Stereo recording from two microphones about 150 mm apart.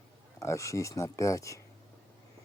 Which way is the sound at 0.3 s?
20° left (ahead or behind).